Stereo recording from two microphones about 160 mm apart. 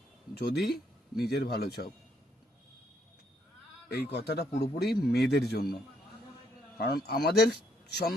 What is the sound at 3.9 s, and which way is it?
A man's voice, 90° left.